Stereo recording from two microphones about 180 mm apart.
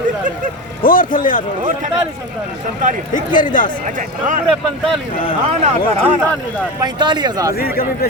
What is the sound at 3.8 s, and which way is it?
Speech, 45° right (ahead or behind).